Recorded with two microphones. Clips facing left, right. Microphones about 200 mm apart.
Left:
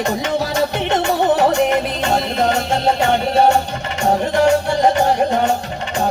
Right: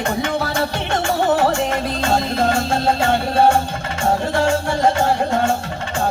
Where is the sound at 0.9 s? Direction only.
20° left (ahead or behind).